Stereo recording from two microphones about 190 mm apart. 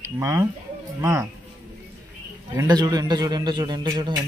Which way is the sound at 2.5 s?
20° right (ahead or behind).